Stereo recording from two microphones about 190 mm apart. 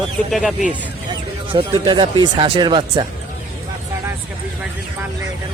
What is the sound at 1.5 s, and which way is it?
Speech, 25° right (ahead or behind).